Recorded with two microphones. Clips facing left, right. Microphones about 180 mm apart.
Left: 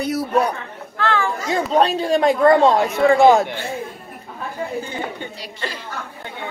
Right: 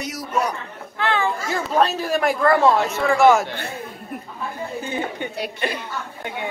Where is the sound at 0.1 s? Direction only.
60° left (ahead or behind).